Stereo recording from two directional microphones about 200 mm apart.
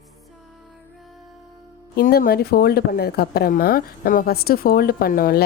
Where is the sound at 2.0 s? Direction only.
50° left (ahead or behind).